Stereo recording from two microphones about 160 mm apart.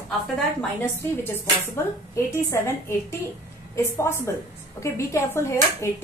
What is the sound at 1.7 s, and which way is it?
Speech, 15° left (ahead or behind).